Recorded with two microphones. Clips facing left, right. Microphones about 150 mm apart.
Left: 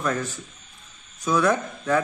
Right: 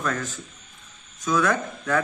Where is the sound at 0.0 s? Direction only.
10° left (ahead or behind).